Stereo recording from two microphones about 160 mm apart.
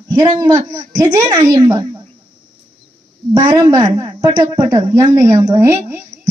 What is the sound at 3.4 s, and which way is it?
A woman's voice, 25° right (ahead or behind).